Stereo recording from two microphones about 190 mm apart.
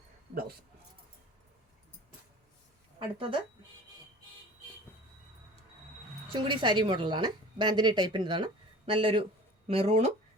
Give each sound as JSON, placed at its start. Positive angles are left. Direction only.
{"t": 3.0, "sound": "a woman's voice", "side_deg": -30}
{"t": 6.5, "sound": "a woman's voice", "side_deg": -25}